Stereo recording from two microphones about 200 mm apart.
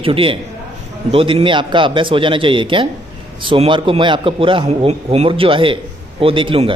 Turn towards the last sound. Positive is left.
turn(degrees=-25)  # may be behind; listen again after turning